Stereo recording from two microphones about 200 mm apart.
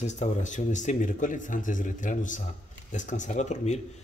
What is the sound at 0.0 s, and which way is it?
A man's voice, 35° left (ahead or behind).